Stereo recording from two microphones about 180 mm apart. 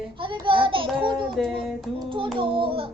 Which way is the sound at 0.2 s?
30° right (ahead or behind).